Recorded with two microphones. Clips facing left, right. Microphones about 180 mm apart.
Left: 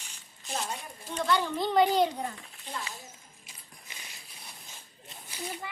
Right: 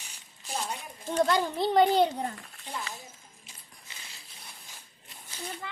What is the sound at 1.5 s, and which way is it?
Speech, 35° right (ahead or behind).